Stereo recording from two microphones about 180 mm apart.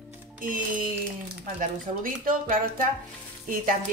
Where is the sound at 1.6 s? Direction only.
50° right (ahead or behind).